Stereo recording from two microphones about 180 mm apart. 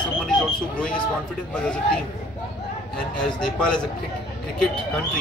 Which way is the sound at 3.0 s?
5° left (ahead or behind).